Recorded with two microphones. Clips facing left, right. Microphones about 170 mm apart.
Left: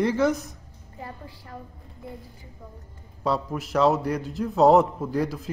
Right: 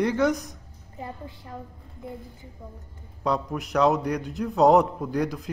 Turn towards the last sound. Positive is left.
turn(degrees=0)  # may be behind; listen again after turning